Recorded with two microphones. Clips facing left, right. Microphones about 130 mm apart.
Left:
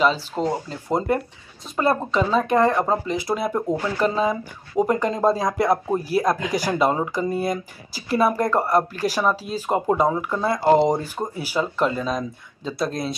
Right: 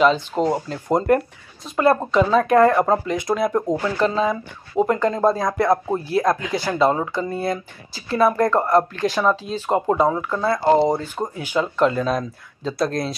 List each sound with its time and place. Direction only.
0.0 s speech: centre (ahead or behind)
10.0 s speech: 15° left (ahead or behind)
11.4 s speech: 5° left (ahead or behind)